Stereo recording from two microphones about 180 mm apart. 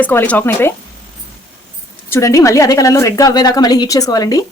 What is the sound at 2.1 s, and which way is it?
A woman's voice, 15° left (ahead or behind).